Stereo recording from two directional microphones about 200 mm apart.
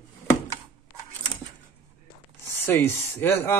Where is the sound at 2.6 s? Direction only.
10° left (ahead or behind).